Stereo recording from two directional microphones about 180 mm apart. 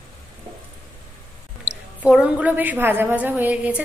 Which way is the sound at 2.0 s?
5° right (ahead or behind).